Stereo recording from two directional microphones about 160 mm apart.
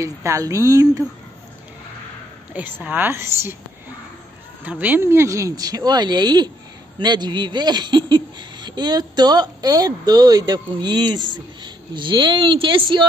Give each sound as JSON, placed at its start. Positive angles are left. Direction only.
{"t": 0.0, "sound": "speech", "side_deg": -20}
{"t": 2.5, "sound": "a woman's voice", "side_deg": -10}
{"t": 4.6, "sound": "a woman's voice", "side_deg": -10}